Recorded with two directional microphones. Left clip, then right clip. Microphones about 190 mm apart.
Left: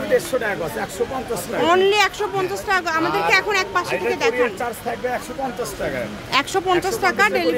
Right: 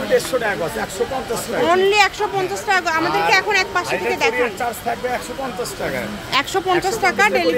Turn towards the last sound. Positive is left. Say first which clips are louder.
# right 2 dB
turn(degrees=0)  # may be behind; listen again after turning